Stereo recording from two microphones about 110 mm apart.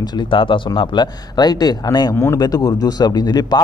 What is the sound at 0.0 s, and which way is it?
A man's voice, 40° left (ahead or behind).